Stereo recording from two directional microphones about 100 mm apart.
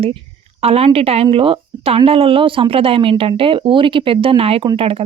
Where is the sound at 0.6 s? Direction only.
90° right.